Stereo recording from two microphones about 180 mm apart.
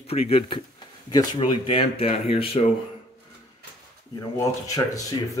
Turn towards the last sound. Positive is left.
turn(degrees=20)  # may be behind; listen again after turning